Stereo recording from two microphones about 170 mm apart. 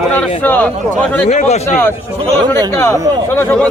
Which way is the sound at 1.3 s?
40° left (ahead or behind).